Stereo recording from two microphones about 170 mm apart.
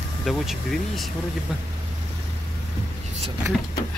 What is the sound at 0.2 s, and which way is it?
Speech, centre (ahead or behind).